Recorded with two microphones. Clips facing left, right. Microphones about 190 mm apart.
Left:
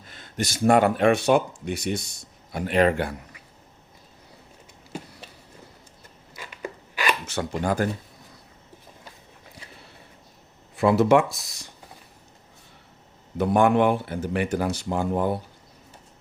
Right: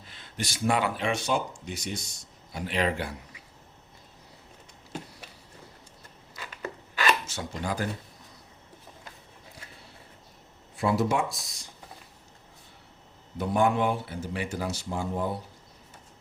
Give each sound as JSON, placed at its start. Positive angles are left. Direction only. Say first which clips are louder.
{"t": 0.1, "sound": "speech", "louder": "left 6 dB", "side_deg": 45}
{"t": 6.3, "sound": "a sound", "louder": "left 2 dB", "side_deg": 15}
{"t": 7.3, "sound": "speech", "louder": "left 7 dB", "side_deg": 60}
{"t": 10.8, "sound": "speech", "louder": "left 8 dB", "side_deg": 65}
{"t": 13.4, "sound": "speech", "louder": "left 6 dB", "side_deg": 60}